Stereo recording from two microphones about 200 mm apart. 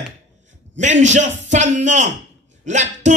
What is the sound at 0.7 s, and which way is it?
Speech, 35° right (ahead or behind).